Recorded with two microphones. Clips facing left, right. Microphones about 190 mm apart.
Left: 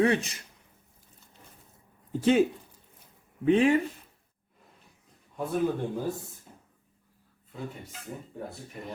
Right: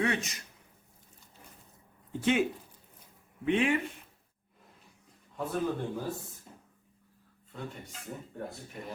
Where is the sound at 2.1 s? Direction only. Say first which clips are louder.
Left 5 dB; 35° left (ahead or behind).